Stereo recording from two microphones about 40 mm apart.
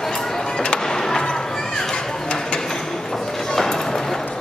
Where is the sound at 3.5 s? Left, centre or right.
Centre.